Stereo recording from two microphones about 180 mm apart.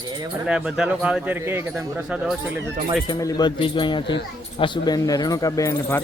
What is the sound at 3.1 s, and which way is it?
Speech, 20° left (ahead or behind).